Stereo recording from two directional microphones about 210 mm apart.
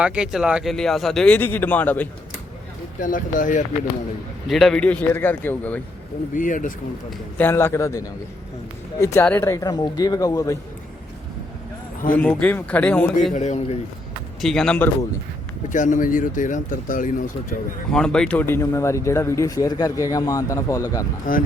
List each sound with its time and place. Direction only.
0.0 s speech: 5° right (ahead or behind)
3.0 s speech: 40° left (ahead or behind)
4.4 s speech: centre (ahead or behind)
6.3 s speech: 40° left (ahead or behind)
7.3 s speech: 10° left (ahead or behind)
12.1 s speech: 5° left (ahead or behind)
13.3 s speech: 35° left (ahead or behind)
14.4 s speech: 5° left (ahead or behind)
15.7 s speech: 35° left (ahead or behind)
17.9 s speech: 5° left (ahead or behind)
21.3 s speech: 40° left (ahead or behind)